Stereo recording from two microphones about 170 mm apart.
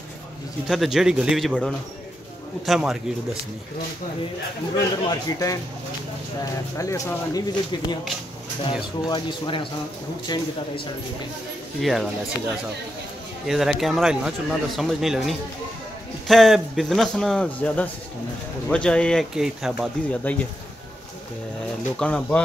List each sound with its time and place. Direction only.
0.7 s speech: centre (ahead or behind)
5.0 s speech: 20° left (ahead or behind)
6.8 s speech: 20° left (ahead or behind)
9.1 s speech: 30° left (ahead or behind)
11.8 s speech: centre (ahead or behind)
13.5 s speech: centre (ahead or behind)
21.9 s speech: 5° left (ahead or behind)